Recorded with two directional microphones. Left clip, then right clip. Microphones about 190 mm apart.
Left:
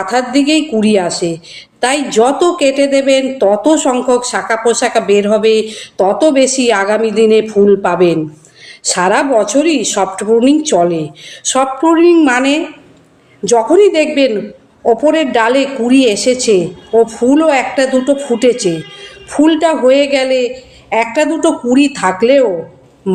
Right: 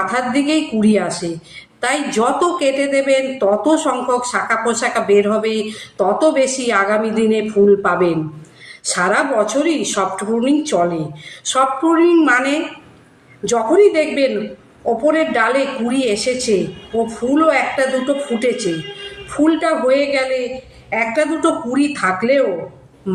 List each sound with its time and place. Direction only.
0.1 s speech: 30° left (ahead or behind)
1.2 s a woman's voice: 5° right (ahead or behind)
1.8 s speech: 30° left (ahead or behind)